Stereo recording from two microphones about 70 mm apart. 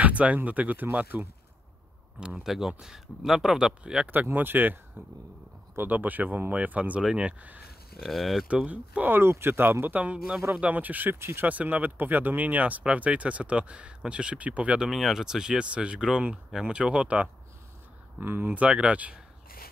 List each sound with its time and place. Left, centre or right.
0.0 s speech: right
2.1 s speech: centre
4.1 s speech: right
8.0 s speech: centre
8.5 s speech: centre
9.1 s speech: right
9.9 s speech: centre
10.5 s speech: right
11.1 s speech: right
11.4 s speech: right
14.9 s speech: centre
18.2 s speech: right
18.5 s speech: centre